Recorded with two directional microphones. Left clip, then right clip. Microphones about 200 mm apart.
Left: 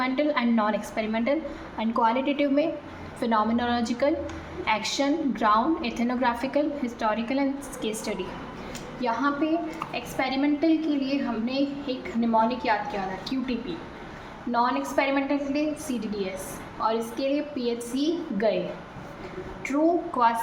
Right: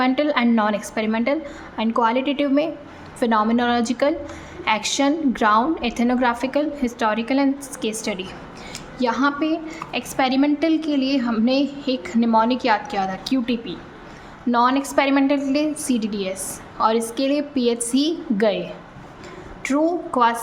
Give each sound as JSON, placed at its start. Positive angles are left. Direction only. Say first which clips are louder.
{"t": 0.0, "sound": "a woman's voice", "louder": "right 6 dB", "side_deg": -35}
{"t": 9.0, "sound": "a woman's voice", "louder": "right 5 dB", "side_deg": -45}
{"t": 19.6, "sound": "a woman's voice", "louder": "right 3 dB", "side_deg": -50}